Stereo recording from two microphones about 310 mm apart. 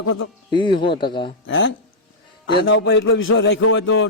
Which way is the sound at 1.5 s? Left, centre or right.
Left.